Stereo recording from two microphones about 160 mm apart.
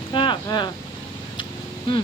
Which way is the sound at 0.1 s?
30° left (ahead or behind).